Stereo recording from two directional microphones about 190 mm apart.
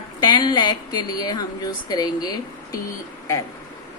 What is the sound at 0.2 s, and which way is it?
Speech, 25° left (ahead or behind).